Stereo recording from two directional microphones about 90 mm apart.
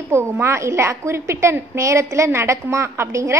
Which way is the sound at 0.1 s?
30° right (ahead or behind).